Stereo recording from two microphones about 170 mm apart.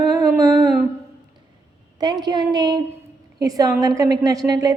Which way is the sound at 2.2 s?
25° right (ahead or behind).